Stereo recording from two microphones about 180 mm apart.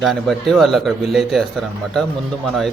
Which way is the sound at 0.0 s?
Centre (ahead or behind).